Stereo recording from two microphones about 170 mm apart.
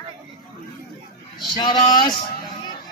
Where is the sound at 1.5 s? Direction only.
25° left (ahead or behind).